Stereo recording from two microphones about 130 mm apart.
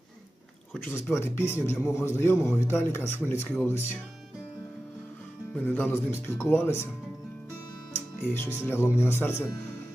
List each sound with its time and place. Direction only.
0.7 s a man's voice: 10° left (ahead or behind)
5.5 s speech: 15° left (ahead or behind)
7.9 s speech: 15° left (ahead or behind)